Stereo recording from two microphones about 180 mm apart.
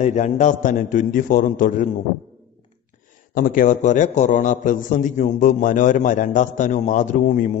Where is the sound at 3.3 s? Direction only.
50° left (ahead or behind).